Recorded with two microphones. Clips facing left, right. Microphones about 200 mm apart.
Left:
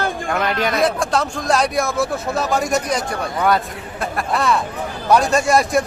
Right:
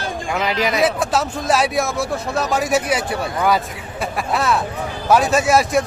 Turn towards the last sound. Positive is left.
turn(degrees=-5)  # may be behind; listen again after turning